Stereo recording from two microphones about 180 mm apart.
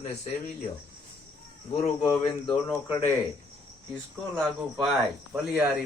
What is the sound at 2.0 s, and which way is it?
Speech, 15° left (ahead or behind).